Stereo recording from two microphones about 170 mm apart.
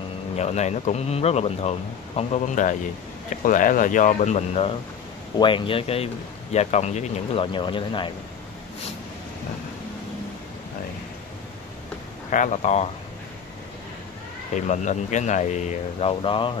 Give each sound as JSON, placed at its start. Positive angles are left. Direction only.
{"t": 0.4, "sound": "speech", "side_deg": 40}
{"t": 12.3, "sound": "speech", "side_deg": 45}
{"t": 14.7, "sound": "speech", "side_deg": 45}